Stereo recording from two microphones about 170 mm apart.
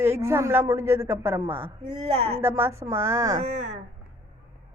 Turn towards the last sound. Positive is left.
turn(degrees=-45)  # may be behind; listen again after turning